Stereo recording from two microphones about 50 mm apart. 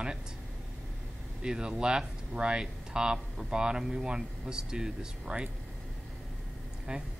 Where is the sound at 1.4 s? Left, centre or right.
Centre.